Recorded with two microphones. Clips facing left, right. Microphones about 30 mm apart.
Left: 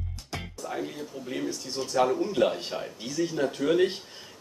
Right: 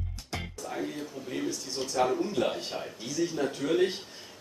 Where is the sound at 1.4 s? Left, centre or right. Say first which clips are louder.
Left 1 dB; centre.